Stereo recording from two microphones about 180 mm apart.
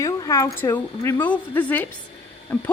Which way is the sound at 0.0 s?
20° left (ahead or behind).